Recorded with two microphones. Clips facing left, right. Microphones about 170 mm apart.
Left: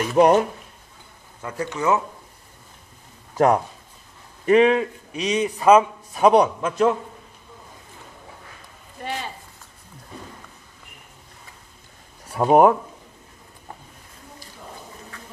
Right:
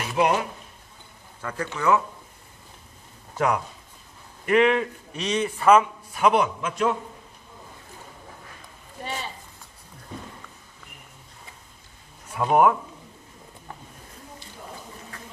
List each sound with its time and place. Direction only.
0.1 s speech: 45° left (ahead or behind)
1.4 s speech: 20° left (ahead or behind)
3.3 s a man's voice: 40° left (ahead or behind)
4.5 s speech: 25° left (ahead or behind)
5.1 s a man's voice: 10° left (ahead or behind)
5.7 s a man's voice: 30° left (ahead or behind)
12.4 s a man's voice: 40° left (ahead or behind)